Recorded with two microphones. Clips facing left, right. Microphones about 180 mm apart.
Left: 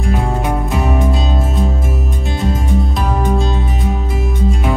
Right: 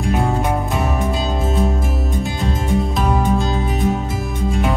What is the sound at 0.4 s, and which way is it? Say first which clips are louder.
Music: left 1 dB; centre (ahead or behind).